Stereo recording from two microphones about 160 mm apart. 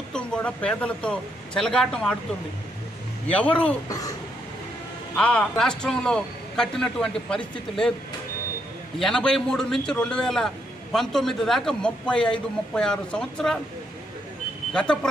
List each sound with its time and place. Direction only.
0.1 s speech: 5° left (ahead or behind)
3.3 s speech: 10° left (ahead or behind)
5.1 s a man's voice: 5° left (ahead or behind)
9.0 s a man's voice: 5° left (ahead or behind)
14.7 s speech: 5° left (ahead or behind)